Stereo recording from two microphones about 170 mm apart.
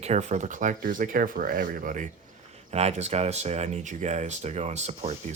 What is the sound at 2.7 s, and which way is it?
Speech, 40° right (ahead or behind).